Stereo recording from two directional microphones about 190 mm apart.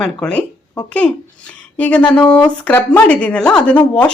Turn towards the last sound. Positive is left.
turn(degrees=5)  # may be behind; listen again after turning